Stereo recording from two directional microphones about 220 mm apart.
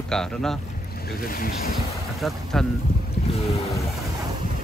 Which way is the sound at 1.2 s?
40° left (ahead or behind).